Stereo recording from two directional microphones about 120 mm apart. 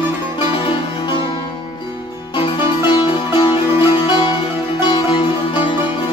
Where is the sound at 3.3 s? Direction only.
40° left (ahead or behind).